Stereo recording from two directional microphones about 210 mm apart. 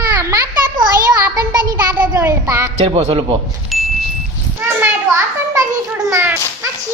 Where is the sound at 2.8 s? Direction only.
30° right (ahead or behind).